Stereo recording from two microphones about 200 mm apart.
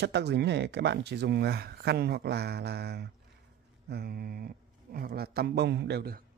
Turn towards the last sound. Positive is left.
turn(degrees=-50)  # may be behind; listen again after turning